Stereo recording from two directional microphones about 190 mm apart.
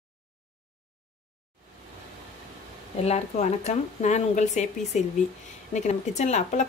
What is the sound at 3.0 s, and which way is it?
Speech, 35° left (ahead or behind).